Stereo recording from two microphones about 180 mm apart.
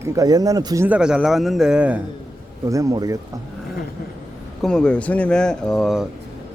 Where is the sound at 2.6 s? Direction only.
15° right (ahead or behind).